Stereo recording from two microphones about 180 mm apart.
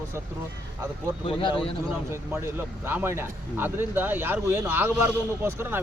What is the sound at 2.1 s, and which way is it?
Speech, 10° right (ahead or behind).